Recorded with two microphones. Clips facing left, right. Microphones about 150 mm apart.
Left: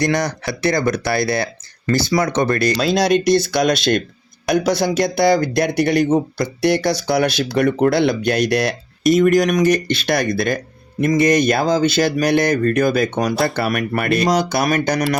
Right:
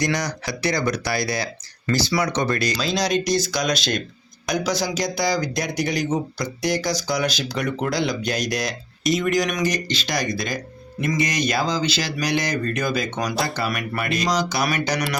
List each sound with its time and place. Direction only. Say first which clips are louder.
0.0 s speech: left 5 dB; 55° left (ahead or behind)